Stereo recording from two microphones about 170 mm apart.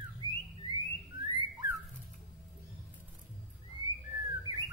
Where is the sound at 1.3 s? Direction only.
25° right (ahead or behind).